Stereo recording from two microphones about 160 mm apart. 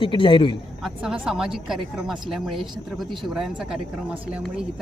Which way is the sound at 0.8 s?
5° right (ahead or behind).